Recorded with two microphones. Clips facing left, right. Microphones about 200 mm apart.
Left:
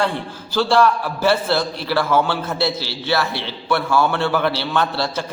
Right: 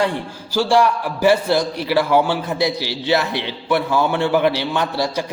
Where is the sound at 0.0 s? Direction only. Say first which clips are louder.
Right 1 dB; 15° right (ahead or behind).